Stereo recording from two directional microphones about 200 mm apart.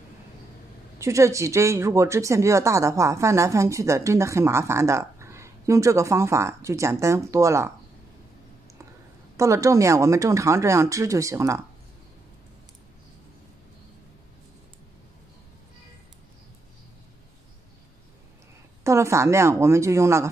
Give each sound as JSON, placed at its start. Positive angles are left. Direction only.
{"t": 0.9, "sound": "speech", "side_deg": -15}
{"t": 9.4, "sound": "speech", "side_deg": -15}
{"t": 18.9, "sound": "speech", "side_deg": -15}